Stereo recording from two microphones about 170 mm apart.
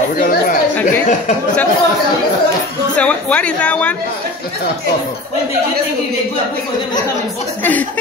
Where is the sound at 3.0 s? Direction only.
5° left (ahead or behind).